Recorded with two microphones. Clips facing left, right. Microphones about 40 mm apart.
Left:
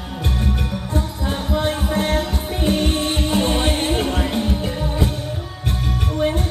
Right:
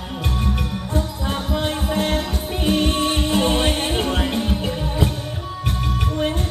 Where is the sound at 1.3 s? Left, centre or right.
Centre.